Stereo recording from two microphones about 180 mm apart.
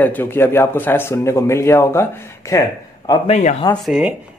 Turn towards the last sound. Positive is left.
turn(degrees=-5)  # may be behind; listen again after turning